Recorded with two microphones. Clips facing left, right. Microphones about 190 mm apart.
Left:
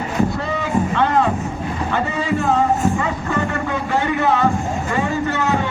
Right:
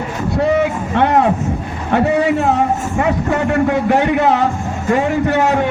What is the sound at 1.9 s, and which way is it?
Vehicle, 65° right (ahead or behind).